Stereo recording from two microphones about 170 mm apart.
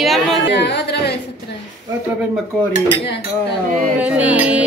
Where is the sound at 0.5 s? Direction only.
90° left.